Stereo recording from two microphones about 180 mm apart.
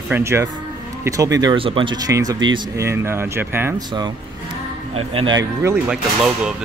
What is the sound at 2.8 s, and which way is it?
Speech, 15° right (ahead or behind).